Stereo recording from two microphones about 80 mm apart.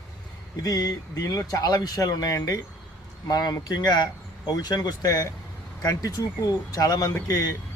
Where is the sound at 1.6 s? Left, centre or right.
Left.